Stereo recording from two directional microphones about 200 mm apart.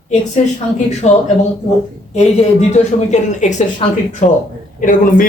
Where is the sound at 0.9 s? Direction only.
35° left (ahead or behind).